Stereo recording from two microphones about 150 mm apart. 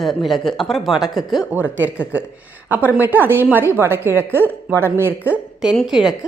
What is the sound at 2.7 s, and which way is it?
A woman's voice, 10° right (ahead or behind).